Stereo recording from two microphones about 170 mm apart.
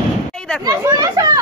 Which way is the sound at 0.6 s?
20° right (ahead or behind).